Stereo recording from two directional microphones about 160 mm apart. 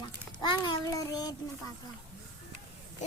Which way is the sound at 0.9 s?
25° left (ahead or behind).